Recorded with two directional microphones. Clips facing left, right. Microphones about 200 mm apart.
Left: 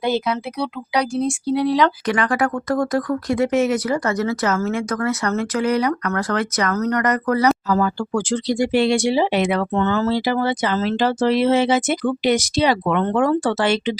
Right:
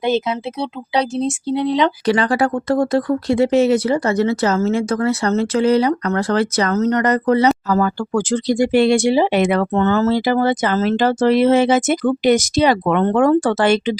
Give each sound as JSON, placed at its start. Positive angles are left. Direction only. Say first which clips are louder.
{"t": 0.0, "sound": "speech", "louder": "right 2 dB", "side_deg": -20}
{"t": 7.7, "sound": "speech", "louder": "right 2 dB", "side_deg": -45}